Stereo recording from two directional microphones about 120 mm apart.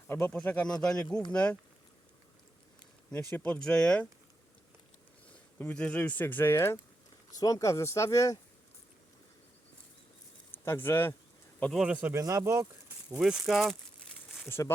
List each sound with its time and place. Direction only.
0.1 s speech: 10° left (ahead or behind)
3.1 s speech: 15° left (ahead or behind)
5.3 s speech: 15° left (ahead or behind)
7.3 s speech: 30° left (ahead or behind)
10.5 s speech: 20° left (ahead or behind)
11.7 s speech: 5° right (ahead or behind)
12.2 s speech: 25° right (ahead or behind)
13.1 s speech: 5° right (ahead or behind)
14.4 s speech: 20° left (ahead or behind)